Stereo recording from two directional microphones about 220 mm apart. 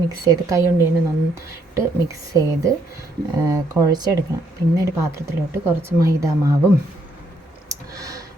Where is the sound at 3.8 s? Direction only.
15° right (ahead or behind).